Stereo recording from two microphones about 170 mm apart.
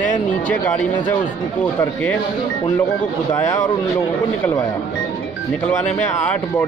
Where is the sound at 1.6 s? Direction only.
10° left (ahead or behind).